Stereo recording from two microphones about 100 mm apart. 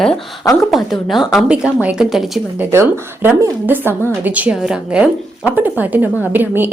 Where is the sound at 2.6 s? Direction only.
25° right (ahead or behind).